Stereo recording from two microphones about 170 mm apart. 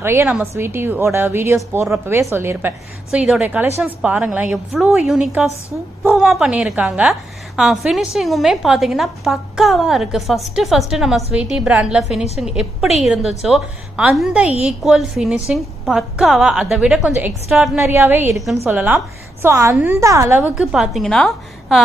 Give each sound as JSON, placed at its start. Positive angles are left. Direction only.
{"t": 0.0, "sound": "a woman's voice", "side_deg": -15}
{"t": 17.7, "sound": "a woman's voice", "side_deg": -15}